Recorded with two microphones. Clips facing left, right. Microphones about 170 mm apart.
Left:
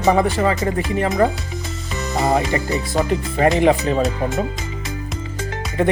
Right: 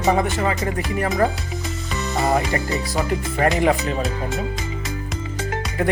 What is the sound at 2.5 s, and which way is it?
Speech, 20° left (ahead or behind).